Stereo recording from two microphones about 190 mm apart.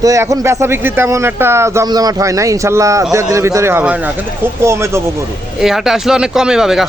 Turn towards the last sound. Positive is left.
turn(degrees=0)  # may be behind; listen again after turning